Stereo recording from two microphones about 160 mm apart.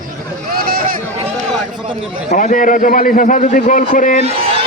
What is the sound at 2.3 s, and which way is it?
A man's voice, 55° left (ahead or behind).